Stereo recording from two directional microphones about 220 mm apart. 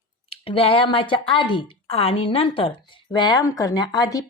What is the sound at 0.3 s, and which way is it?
A woman's voice, 25° left (ahead or behind).